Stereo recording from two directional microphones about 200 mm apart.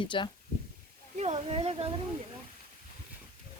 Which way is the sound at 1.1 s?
35° right (ahead or behind).